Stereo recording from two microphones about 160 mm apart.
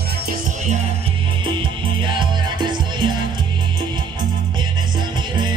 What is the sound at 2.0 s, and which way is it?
Music, 30° right (ahead or behind).